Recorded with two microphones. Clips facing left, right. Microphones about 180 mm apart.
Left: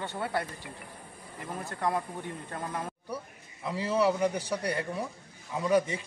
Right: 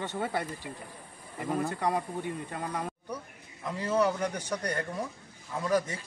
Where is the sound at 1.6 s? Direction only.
15° right (ahead or behind).